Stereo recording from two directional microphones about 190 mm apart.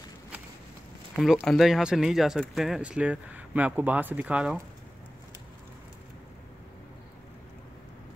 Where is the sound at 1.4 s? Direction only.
Centre (ahead or behind).